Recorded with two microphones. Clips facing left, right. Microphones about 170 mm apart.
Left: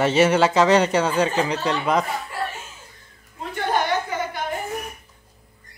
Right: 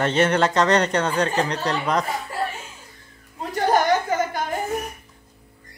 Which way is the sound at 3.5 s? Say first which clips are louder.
Right 4 dB; 40° right (ahead or behind).